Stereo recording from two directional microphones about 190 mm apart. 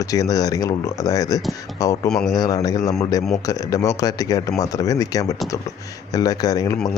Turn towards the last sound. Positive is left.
turn(degrees=20)  # may be behind; listen again after turning